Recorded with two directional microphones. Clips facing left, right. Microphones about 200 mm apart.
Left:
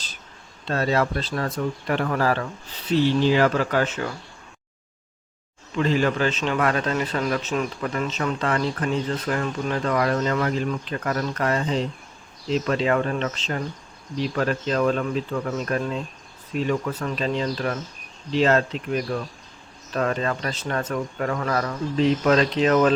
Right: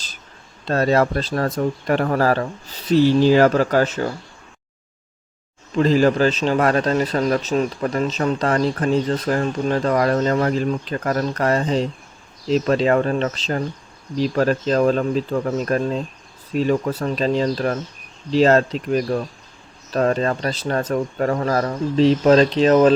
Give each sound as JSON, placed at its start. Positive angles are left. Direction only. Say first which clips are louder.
{"t": 0.7, "sound": "speech", "louder": "right 5 dB", "side_deg": -45}
{"t": 5.7, "sound": "speech", "louder": "right 6 dB", "side_deg": -40}